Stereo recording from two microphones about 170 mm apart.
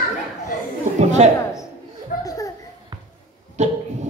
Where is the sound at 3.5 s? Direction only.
45° right (ahead or behind).